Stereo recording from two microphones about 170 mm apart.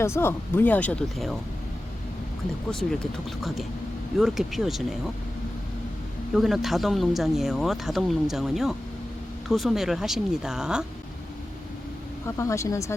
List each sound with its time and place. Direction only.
0.0 s speech: 15° left (ahead or behind)
2.6 s speech: 5° left (ahead or behind)
6.3 s speech: centre (ahead or behind)
12.2 s speech: 15° left (ahead or behind)